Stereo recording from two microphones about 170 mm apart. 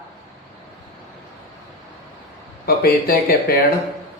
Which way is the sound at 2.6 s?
60° left (ahead or behind).